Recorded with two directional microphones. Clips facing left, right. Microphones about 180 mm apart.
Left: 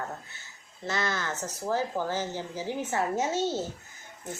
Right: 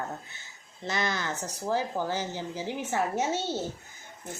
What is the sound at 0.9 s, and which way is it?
Speech, 15° right (ahead or behind).